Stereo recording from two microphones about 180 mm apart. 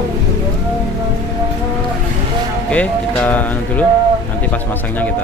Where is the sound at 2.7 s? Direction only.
5° left (ahead or behind).